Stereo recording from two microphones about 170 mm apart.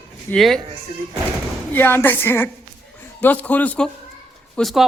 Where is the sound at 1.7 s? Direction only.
10° left (ahead or behind).